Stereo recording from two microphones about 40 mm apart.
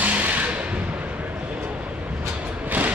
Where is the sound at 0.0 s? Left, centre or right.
Right.